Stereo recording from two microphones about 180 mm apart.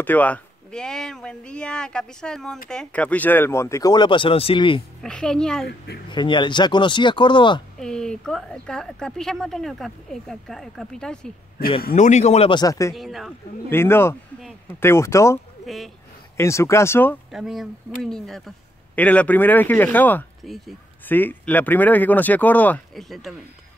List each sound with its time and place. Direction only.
0.0 s speech: 10° left (ahead or behind); by 4.8 s 30° left (ahead or behind)
5.0 s speech: 5° left (ahead or behind)
6.0 s speech: 25° left (ahead or behind)
7.8 s speech: 5° left (ahead or behind)
11.9 s speech: 40° left (ahead or behind); by 12.9 s 20° left (ahead or behind)
12.9 s speech: centre (ahead or behind)
13.7 s speech: 15° left (ahead or behind)
15.6 s speech: centre (ahead or behind)
16.3 s speech: 15° left (ahead or behind)
17.3 s speech: centre (ahead or behind)